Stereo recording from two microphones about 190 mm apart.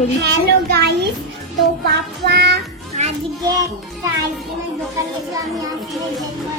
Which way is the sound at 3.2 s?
Centre (ahead or behind).